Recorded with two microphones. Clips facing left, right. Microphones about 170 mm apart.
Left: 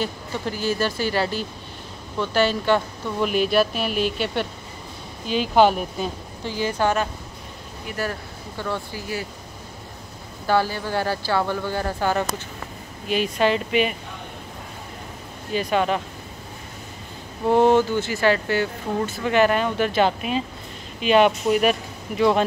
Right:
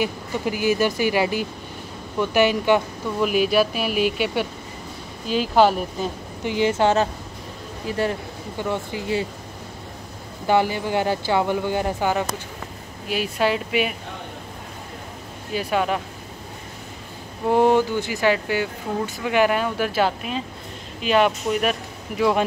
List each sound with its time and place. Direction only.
0.0 s speech: 15° right (ahead or behind)
6.4 s speech: 20° right (ahead or behind)
10.4 s speech: 20° right (ahead or behind)
15.5 s speech: 5° right (ahead or behind)
17.5 s speech: 10° right (ahead or behind)